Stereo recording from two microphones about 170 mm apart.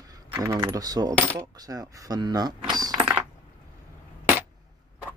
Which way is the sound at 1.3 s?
20° right (ahead or behind).